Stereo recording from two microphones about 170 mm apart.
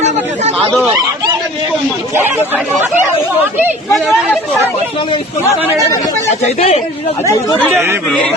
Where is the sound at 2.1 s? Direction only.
10° right (ahead or behind).